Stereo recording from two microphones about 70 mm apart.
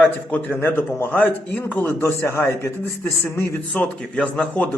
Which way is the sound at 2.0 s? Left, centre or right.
Left.